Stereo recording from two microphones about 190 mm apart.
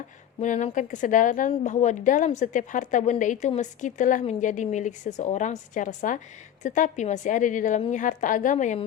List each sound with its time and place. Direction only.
0.3 s a woman's voice: 40° left (ahead or behind)